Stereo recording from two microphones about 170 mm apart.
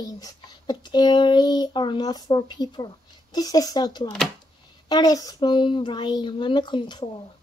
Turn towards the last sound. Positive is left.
turn(degrees=25)  # may be behind; listen again after turning